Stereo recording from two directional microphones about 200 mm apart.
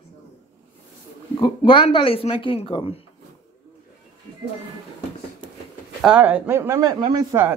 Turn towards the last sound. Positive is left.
turn(degrees=-20)  # may be behind; listen again after turning